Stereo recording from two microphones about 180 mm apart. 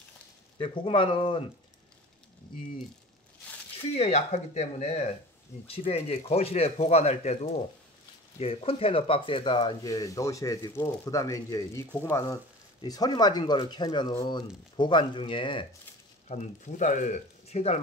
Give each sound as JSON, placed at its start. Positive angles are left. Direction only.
{"t": 0.6, "sound": "speech", "side_deg": 30}
{"t": 3.7, "sound": "speech", "side_deg": 35}
{"t": 8.4, "sound": "speech", "side_deg": 30}
{"t": 16.3, "sound": "speech", "side_deg": 40}